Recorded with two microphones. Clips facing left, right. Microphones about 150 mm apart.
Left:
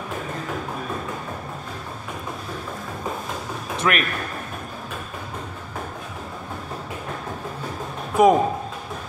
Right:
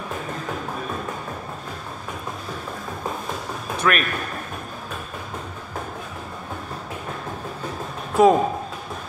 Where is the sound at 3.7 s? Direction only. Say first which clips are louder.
Right 1 dB; 25° left (ahead or behind).